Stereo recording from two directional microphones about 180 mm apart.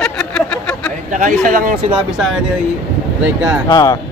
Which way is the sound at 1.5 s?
50° right (ahead or behind).